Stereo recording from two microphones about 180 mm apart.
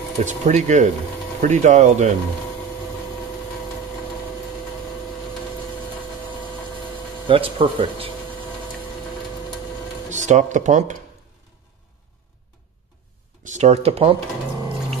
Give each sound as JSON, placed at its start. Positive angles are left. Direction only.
{"t": 0.2, "sound": "speech", "side_deg": -40}
{"t": 7.2, "sound": "speech", "side_deg": -30}
{"t": 10.0, "sound": "speech", "side_deg": -40}
{"t": 13.4, "sound": "speech", "side_deg": -40}